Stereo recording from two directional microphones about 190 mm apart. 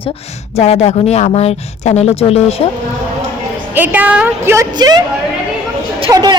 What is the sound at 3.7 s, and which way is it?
A woman's voice, 10° right (ahead or behind).